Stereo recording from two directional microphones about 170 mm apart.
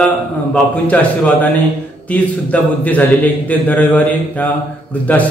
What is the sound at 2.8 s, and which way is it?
A man's voice, 10° left (ahead or behind).